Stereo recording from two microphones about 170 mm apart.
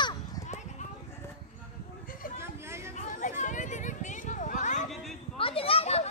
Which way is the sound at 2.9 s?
45° left (ahead or behind).